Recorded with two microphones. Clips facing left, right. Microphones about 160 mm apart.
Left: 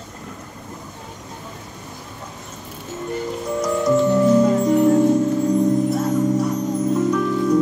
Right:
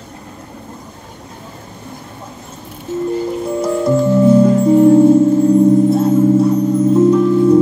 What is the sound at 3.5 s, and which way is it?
Music, 30° right (ahead or behind).